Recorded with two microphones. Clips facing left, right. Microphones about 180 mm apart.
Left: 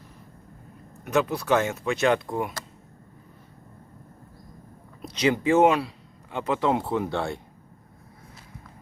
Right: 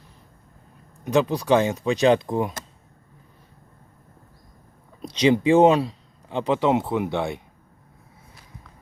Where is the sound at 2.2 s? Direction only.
20° right (ahead or behind).